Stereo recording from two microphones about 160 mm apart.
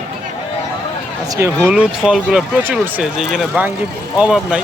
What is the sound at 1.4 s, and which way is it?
Speech, 15° right (ahead or behind).